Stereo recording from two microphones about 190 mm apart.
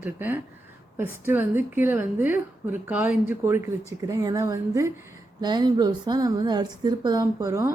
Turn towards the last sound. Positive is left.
turn(degrees=-15)  # may be behind; listen again after turning